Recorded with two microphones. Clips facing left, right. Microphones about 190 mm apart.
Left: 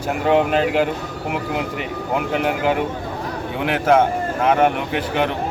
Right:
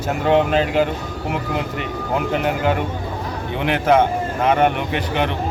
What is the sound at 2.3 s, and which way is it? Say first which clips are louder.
Speech: even; 5° left (ahead or behind).